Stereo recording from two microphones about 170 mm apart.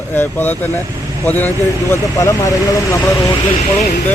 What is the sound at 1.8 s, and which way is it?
A man's voice, 20° left (ahead or behind).